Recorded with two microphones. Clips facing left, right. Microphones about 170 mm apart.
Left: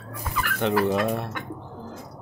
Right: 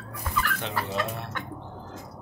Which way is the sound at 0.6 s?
60° left (ahead or behind).